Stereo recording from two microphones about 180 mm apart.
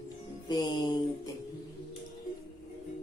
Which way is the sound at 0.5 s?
25° left (ahead or behind).